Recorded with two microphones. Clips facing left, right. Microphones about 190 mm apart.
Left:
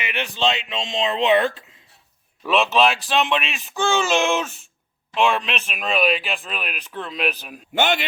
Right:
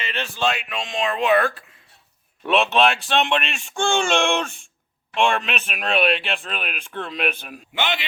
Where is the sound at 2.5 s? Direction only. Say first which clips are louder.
Even; centre (ahead or behind).